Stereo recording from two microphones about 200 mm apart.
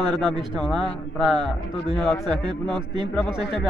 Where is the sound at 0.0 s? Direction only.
Centre (ahead or behind).